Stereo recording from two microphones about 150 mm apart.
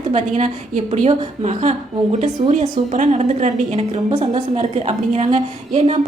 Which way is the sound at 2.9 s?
50° right (ahead or behind).